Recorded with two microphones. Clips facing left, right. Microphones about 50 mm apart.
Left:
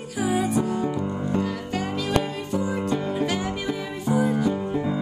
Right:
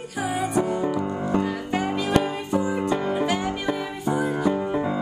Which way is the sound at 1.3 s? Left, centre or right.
Centre.